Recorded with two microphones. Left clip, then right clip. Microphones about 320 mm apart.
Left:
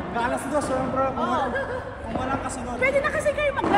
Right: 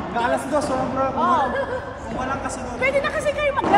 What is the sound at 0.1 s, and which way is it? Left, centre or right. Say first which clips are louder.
A man's voice: right 4 dB; centre.